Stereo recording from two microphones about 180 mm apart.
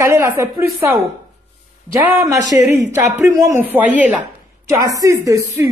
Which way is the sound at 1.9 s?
15° right (ahead or behind).